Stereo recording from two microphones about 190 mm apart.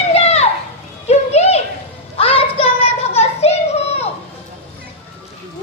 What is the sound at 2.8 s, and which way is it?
Children playing, 35° left (ahead or behind).